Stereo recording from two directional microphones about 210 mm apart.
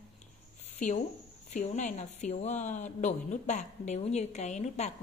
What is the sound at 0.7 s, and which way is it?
Speech, 35° left (ahead or behind).